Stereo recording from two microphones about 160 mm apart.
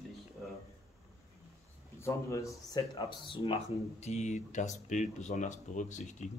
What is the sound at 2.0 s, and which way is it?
Speech, 20° left (ahead or behind).